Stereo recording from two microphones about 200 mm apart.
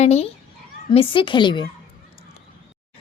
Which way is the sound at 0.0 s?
35° left (ahead or behind).